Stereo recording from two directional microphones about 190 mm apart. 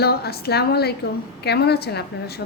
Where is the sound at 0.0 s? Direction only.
55° left (ahead or behind).